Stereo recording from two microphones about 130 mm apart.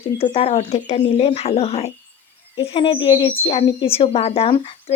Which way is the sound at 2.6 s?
45° left (ahead or behind).